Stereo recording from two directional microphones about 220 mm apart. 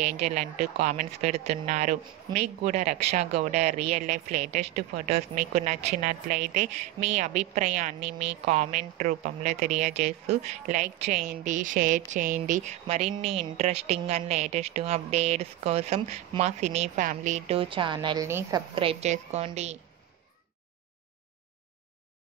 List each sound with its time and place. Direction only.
0.0 s a woman's voice: 30° right (ahead or behind)